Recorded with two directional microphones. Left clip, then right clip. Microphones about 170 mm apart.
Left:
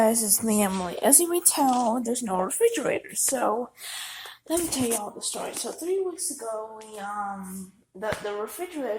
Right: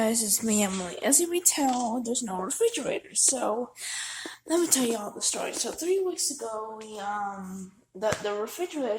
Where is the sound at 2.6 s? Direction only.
Centre (ahead or behind).